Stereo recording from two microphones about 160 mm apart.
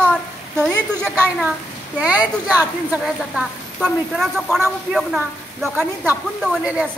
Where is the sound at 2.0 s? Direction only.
10° right (ahead or behind).